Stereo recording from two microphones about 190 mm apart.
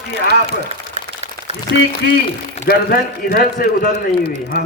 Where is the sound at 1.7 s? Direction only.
60° left (ahead or behind).